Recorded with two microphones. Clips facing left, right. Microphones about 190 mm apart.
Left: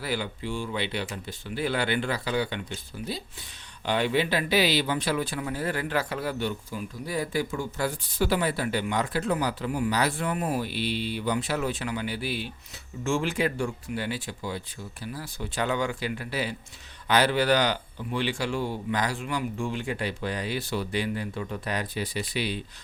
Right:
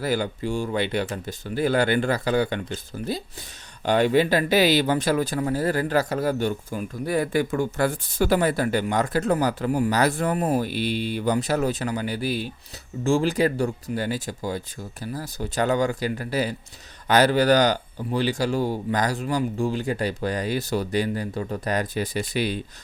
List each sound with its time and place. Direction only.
0.0 s speech: 45° right (ahead or behind)